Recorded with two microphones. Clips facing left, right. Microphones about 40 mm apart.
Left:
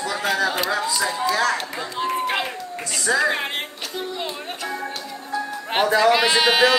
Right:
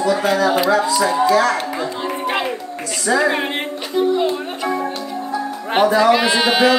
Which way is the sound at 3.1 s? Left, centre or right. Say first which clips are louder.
Right 4 dB; centre.